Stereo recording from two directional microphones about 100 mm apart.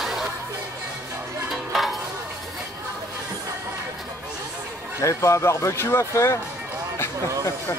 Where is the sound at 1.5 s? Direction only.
Centre (ahead or behind).